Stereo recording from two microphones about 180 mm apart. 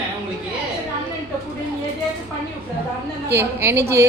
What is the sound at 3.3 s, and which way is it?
Speech, 15° right (ahead or behind).